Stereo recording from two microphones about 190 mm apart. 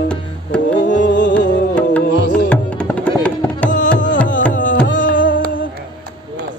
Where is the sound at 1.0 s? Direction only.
70° left (ahead or behind).